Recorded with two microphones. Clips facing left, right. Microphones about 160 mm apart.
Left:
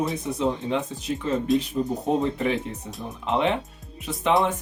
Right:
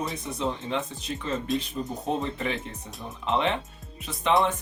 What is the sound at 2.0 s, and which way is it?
Speech, 20° left (ahead or behind).